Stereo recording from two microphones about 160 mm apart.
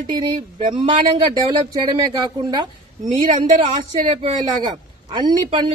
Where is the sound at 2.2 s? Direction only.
25° right (ahead or behind).